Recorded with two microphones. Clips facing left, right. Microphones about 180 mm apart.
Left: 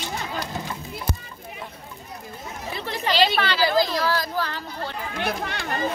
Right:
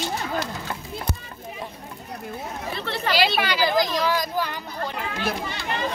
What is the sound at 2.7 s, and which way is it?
Chatter, 15° left (ahead or behind).